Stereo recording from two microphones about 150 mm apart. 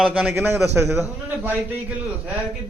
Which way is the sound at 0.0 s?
5° right (ahead or behind).